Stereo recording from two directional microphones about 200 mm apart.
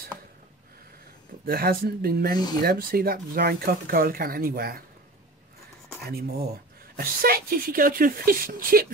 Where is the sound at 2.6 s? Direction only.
50° right (ahead or behind).